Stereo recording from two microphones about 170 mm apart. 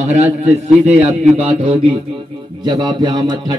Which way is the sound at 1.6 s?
35° right (ahead or behind).